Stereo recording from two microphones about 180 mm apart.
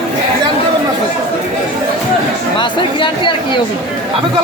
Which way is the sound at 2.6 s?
25° left (ahead or behind).